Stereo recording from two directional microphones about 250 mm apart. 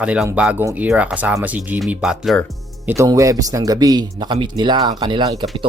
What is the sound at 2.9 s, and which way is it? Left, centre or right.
A man's voice, centre.